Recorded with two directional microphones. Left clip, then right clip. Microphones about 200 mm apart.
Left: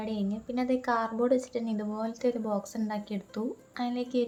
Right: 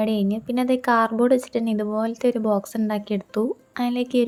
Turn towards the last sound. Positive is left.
turn(degrees=-40)  # may be behind; listen again after turning